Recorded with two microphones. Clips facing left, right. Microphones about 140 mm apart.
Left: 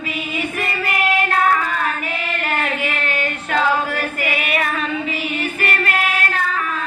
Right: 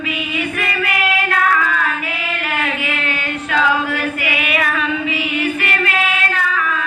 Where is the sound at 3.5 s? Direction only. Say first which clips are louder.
Right 2 dB; 40° left (ahead or behind).